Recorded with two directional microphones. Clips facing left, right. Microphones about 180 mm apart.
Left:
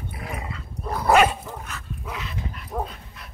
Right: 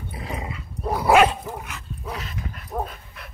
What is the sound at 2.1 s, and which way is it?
Dog, 40° right (ahead or behind).